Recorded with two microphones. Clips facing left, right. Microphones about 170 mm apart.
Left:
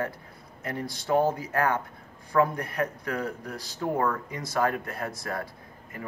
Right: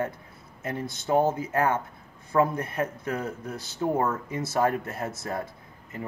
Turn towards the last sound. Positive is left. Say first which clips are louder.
# right 2 dB
turn(degrees=-25)  # may be behind; listen again after turning